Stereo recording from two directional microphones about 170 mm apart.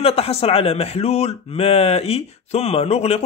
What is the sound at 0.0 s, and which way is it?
Speech, 35° left (ahead or behind).